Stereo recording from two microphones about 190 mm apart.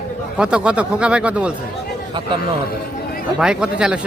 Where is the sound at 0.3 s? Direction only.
5° right (ahead or behind).